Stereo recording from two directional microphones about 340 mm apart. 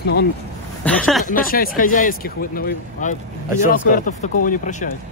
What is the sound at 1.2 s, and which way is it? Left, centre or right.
Speech, left.